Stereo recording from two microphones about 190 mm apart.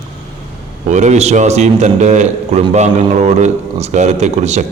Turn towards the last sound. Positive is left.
turn(degrees=-35)  # may be behind; listen again after turning